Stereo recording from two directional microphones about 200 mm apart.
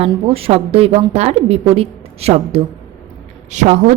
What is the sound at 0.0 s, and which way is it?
A woman's voice, 30° right (ahead or behind).